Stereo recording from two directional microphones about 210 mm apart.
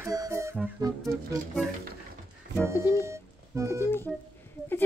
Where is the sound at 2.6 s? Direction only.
15° left (ahead or behind).